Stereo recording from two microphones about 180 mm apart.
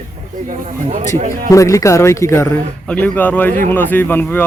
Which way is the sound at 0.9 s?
45° right (ahead or behind).